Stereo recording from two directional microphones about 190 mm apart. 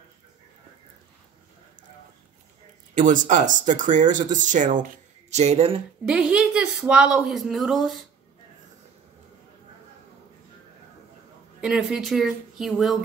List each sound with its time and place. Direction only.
2.9 s speech: 45° right (ahead or behind)
6.0 s a woman's voice: 5° right (ahead or behind)
11.6 s a woman's voice: centre (ahead or behind)